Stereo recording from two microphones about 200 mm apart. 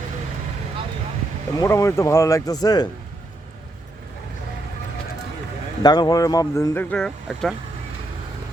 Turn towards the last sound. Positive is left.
turn(degrees=0)  # may be behind; listen again after turning